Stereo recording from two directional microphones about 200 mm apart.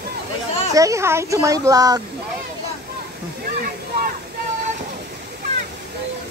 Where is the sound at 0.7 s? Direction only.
15° right (ahead or behind).